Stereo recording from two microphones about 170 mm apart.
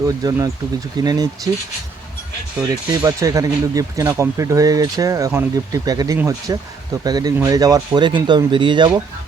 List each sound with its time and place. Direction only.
0.0 s speech: 20° right (ahead or behind)
2.6 s speech: 20° right (ahead or behind)